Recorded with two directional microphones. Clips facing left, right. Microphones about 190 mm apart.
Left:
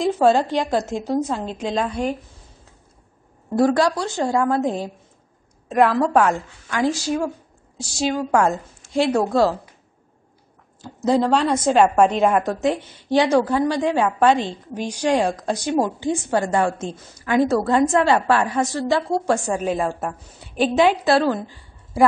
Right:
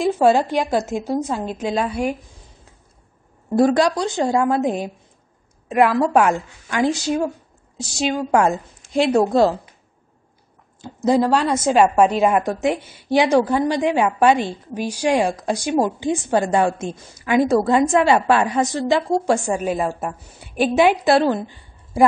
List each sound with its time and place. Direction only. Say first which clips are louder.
0.0 s a woman's voice: right 1 dB; 10° right (ahead or behind)
3.5 s a woman's voice: right 2 dB; 20° right (ahead or behind)
10.8 s a woman's voice: right 2 dB; 15° right (ahead or behind)